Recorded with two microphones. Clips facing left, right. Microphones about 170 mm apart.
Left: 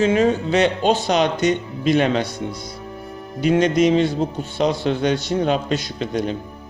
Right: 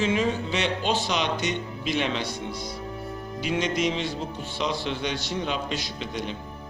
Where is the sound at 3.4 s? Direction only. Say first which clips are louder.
Left 10 dB; 45° left (ahead or behind).